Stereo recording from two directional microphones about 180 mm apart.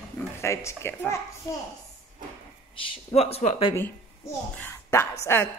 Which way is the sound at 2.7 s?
30° left (ahead or behind).